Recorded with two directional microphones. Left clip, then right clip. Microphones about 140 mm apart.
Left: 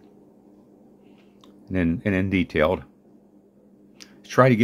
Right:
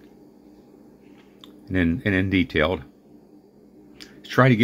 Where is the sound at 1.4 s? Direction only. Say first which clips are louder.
Right 2 dB; 25° left (ahead or behind).